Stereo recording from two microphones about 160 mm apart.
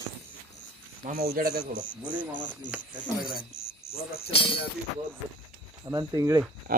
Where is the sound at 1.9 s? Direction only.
55° left (ahead or behind).